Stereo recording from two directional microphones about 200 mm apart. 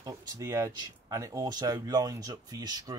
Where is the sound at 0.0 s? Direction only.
15° right (ahead or behind).